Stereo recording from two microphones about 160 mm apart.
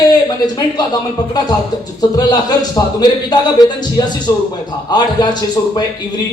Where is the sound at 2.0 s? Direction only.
25° left (ahead or behind).